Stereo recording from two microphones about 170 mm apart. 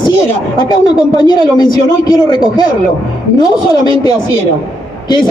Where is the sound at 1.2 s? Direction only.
25° left (ahead or behind).